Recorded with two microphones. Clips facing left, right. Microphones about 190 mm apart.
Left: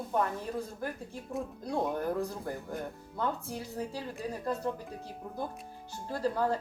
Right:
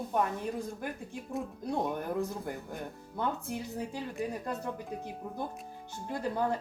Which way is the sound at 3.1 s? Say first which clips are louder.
Right 1 dB; 15° right (ahead or behind).